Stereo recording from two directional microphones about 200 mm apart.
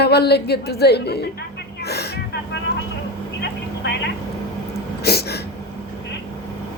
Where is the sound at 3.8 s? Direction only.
55° left (ahead or behind).